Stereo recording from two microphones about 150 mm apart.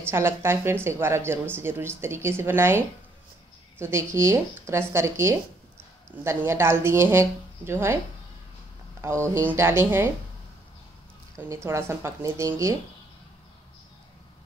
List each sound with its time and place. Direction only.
0.0 s speech: 15° right (ahead or behind)
3.8 s speech: 15° right (ahead or behind)
9.0 s speech: 20° right (ahead or behind)
11.3 s a woman's voice: 20° right (ahead or behind)